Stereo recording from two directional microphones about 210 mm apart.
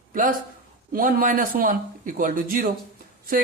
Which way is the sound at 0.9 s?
40° right (ahead or behind).